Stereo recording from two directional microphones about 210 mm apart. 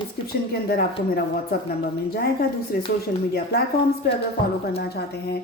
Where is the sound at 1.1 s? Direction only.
45° left (ahead or behind).